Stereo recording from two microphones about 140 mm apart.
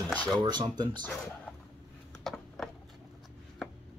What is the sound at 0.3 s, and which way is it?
Speech, 30° right (ahead or behind).